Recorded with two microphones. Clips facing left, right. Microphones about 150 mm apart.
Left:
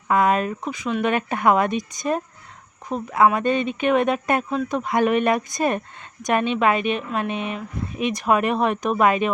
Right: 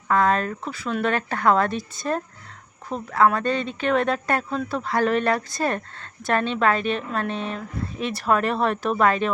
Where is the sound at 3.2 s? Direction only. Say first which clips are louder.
Left 3 dB; 20° left (ahead or behind).